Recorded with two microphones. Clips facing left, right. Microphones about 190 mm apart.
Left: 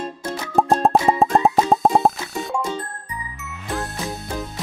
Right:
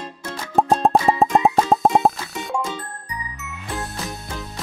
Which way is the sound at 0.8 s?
Centre (ahead or behind).